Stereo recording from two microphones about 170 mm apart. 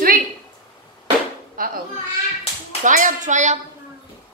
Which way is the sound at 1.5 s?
55° right (ahead or behind).